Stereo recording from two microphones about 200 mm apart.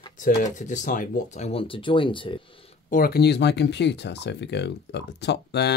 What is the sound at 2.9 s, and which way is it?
Speech, 45° left (ahead or behind).